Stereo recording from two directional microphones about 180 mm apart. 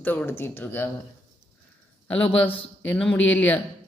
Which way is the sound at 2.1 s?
5° left (ahead or behind).